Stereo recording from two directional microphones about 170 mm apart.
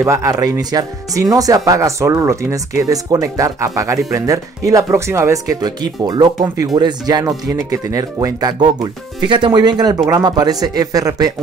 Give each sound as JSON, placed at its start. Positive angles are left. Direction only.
{"t": 0.0, "sound": "speech", "side_deg": -20}